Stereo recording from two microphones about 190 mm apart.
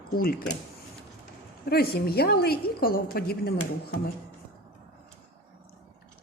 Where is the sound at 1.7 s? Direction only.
55° left (ahead or behind).